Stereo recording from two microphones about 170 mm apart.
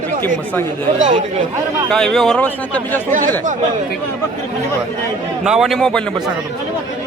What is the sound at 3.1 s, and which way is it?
Speech, 50° right (ahead or behind).